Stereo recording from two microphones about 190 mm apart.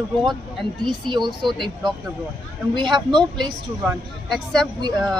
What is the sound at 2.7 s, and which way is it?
Speech, 25° right (ahead or behind).